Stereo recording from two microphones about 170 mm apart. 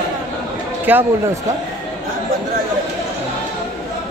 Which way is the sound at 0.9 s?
10° right (ahead or behind).